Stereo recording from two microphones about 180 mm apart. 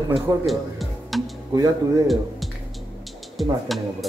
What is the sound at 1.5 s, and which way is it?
Speech, 20° right (ahead or behind).